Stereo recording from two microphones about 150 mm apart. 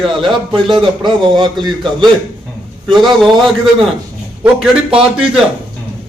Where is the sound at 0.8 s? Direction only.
30° right (ahead or behind).